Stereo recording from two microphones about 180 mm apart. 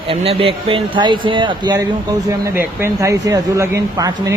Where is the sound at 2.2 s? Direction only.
15° right (ahead or behind).